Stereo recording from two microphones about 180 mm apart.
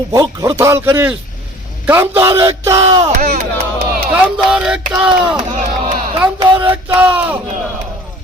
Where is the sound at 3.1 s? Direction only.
50° right (ahead or behind).